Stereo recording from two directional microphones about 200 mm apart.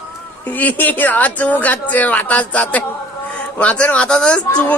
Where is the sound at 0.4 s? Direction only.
10° left (ahead or behind).